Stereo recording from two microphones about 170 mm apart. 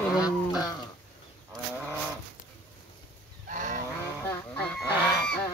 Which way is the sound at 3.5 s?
50° right (ahead or behind).